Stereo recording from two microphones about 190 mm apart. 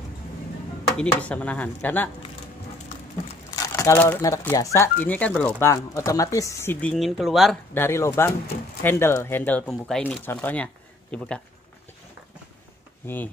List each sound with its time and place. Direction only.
0.8 s speech: 5° left (ahead or behind)
3.5 s speech: 15° left (ahead or behind); by 7.5 s centre (ahead or behind)
7.7 s speech: 10° left (ahead or behind)
13.0 s speech: 10° left (ahead or behind)